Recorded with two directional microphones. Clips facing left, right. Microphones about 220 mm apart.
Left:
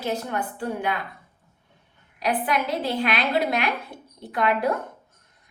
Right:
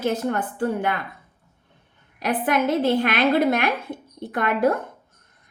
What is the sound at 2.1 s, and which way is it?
A woman's voice, 50° right (ahead or behind).